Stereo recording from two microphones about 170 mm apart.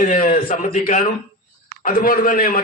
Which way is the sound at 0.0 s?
55° left (ahead or behind).